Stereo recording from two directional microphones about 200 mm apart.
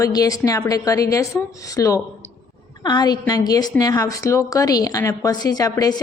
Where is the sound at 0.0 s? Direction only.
20° left (ahead or behind).